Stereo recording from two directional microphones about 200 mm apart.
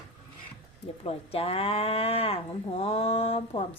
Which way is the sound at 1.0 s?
30° left (ahead or behind).